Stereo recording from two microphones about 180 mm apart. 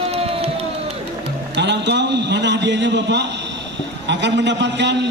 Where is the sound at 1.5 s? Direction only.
75° right (ahead or behind).